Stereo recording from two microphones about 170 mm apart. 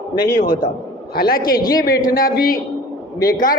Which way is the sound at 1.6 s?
20° left (ahead or behind).